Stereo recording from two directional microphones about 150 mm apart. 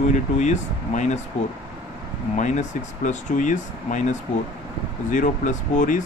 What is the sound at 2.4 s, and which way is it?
Speech, 55° left (ahead or behind).